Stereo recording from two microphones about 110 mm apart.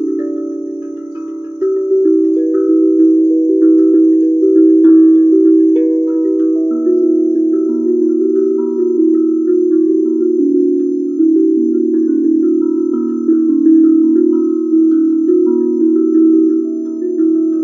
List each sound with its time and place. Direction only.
2.0 s music: 20° right (ahead or behind)
3.5 s singing bowl: 20° right (ahead or behind)
9.1 s wind chime: 20° right (ahead or behind)
13.3 s music: 15° right (ahead or behind)
14.9 s wind chime: 15° right (ahead or behind)